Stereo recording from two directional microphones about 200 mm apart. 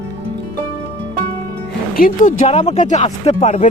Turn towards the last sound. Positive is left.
turn(degrees=35)  # may be behind; listen again after turning